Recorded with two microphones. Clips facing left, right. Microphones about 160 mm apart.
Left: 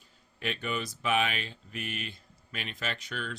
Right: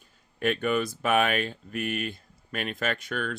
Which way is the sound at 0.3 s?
50° right (ahead or behind).